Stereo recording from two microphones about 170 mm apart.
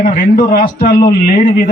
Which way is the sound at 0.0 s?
50° left (ahead or behind).